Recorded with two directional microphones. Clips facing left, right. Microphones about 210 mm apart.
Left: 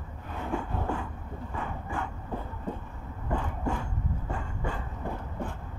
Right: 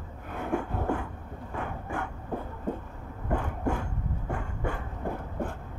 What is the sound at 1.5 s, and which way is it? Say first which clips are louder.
Dog: right 2 dB; 55° right (ahead or behind).